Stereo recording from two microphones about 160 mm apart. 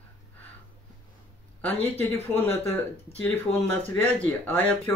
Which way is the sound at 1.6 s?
10° left (ahead or behind).